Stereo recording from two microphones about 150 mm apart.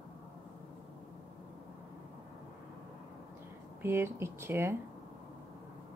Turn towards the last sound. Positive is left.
turn(degrees=-15)  # may be behind; listen again after turning